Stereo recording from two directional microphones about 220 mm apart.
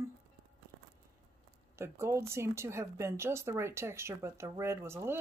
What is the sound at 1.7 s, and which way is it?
A woman's voice, 10° right (ahead or behind).